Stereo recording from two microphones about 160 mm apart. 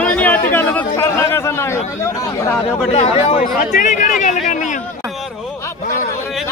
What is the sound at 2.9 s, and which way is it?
Speech, 40° left (ahead or behind).